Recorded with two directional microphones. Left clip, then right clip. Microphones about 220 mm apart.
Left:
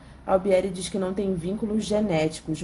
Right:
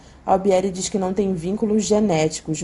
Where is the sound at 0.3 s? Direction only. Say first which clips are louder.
Right 4 dB; 25° right (ahead or behind).